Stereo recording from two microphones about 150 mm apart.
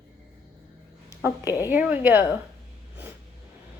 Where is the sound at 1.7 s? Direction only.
10° right (ahead or behind).